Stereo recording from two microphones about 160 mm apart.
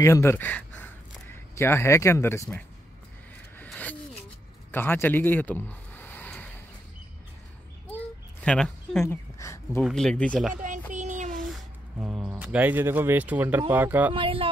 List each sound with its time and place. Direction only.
0.0 s speech: 15° left (ahead or behind)
3.5 s a sound: 10° left (ahead or behind)
7.9 s a sound: 5° left (ahead or behind)
9.0 s speech: 15° left (ahead or behind)
9.8 s speech: centre (ahead or behind)
10.9 s child singing: 50° right (ahead or behind)
11.4 s speech: 5° right (ahead or behind)
14.1 s speech: 35° right (ahead or behind)